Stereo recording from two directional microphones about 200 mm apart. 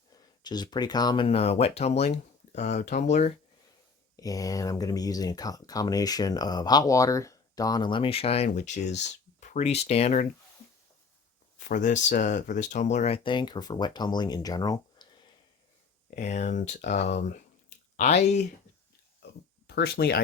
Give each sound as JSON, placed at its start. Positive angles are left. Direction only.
{"t": 0.4, "sound": "speech", "side_deg": 20}
{"t": 4.2, "sound": "speech", "side_deg": 15}
{"t": 11.6, "sound": "speech", "side_deg": 40}
{"t": 16.0, "sound": "speech", "side_deg": 35}
{"t": 19.6, "sound": "speech", "side_deg": 55}